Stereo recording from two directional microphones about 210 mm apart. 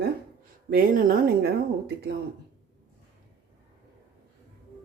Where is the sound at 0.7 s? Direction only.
45° right (ahead or behind).